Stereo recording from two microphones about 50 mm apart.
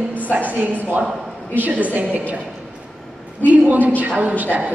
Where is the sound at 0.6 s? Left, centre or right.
Right.